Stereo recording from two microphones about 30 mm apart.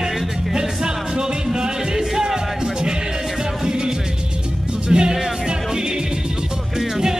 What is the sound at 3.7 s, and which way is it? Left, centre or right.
Music, right.